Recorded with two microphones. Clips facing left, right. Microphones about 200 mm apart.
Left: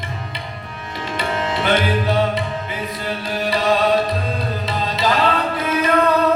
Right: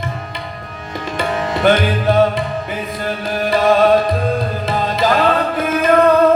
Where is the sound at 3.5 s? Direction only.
50° right (ahead or behind).